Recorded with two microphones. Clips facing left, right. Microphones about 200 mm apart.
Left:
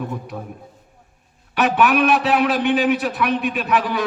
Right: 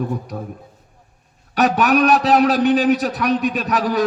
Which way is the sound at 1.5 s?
40° right (ahead or behind).